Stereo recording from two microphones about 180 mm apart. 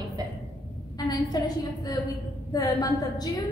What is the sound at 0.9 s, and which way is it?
Speech, 20° left (ahead or behind).